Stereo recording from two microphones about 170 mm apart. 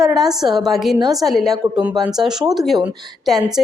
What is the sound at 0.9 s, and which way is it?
Speech, 25° right (ahead or behind).